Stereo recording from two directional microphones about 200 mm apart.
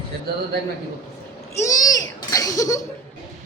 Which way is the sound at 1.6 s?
20° left (ahead or behind).